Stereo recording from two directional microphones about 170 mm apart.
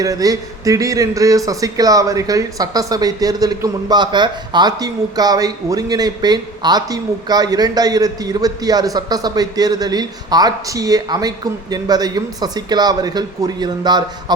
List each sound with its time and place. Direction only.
0.0 s a man's voice: 20° right (ahead or behind)